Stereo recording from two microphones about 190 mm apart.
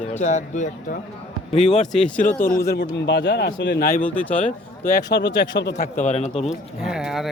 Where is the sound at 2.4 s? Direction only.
55° left (ahead or behind).